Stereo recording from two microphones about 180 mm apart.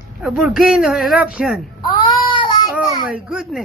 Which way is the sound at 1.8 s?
25° left (ahead or behind).